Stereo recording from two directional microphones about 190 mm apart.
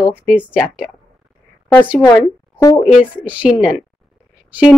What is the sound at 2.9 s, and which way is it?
Speech, 5° right (ahead or behind).